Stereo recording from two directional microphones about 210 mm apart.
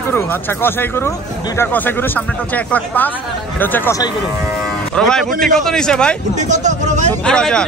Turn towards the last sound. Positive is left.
turn(degrees=5)  # may be behind; listen again after turning